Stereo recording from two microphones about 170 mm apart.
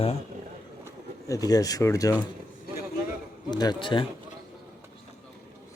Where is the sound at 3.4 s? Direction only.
25° left (ahead or behind).